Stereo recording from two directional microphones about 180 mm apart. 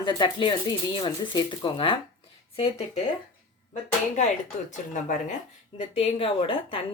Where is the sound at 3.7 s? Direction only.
40° left (ahead or behind).